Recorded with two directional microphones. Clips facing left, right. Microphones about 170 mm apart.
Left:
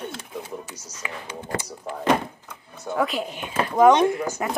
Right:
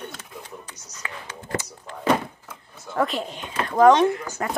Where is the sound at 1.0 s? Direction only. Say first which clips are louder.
Left 3 dB; 15° left (ahead or behind).